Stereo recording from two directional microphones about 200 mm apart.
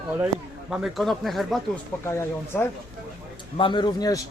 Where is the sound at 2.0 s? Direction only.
15° left (ahead or behind).